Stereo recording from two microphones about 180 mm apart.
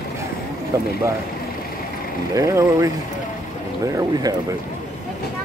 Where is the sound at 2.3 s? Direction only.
20° right (ahead or behind).